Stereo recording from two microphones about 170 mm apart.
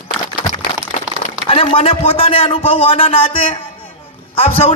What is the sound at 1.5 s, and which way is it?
A man's voice, 35° left (ahead or behind).